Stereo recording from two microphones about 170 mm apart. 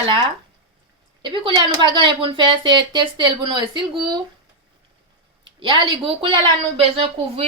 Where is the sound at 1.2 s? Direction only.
25° right (ahead or behind).